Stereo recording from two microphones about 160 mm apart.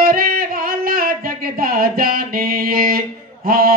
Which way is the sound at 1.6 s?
65° right (ahead or behind).